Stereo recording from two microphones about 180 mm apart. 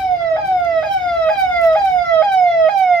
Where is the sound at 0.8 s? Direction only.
5° left (ahead or behind).